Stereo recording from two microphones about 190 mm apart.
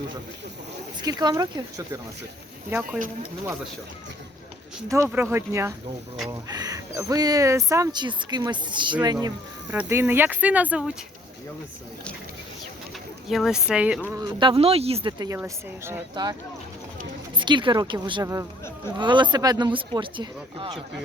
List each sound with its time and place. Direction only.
1.0 s speech: 20° right (ahead or behind)
2.6 s speech: 10° right (ahead or behind)
4.9 s speech: 15° right (ahead or behind)
9.7 s speech: 10° right (ahead or behind)
13.2 s speech: centre (ahead or behind)
14.2 s speech: 25° right (ahead or behind)
15.4 s speech: 10° right (ahead or behind)
17.3 s speech: 25° right (ahead or behind)